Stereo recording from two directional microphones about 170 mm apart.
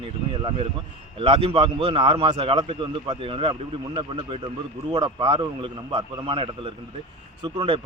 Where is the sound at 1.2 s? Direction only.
35° right (ahead or behind).